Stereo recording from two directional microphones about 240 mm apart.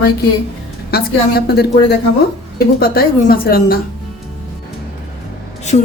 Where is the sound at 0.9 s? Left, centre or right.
Left.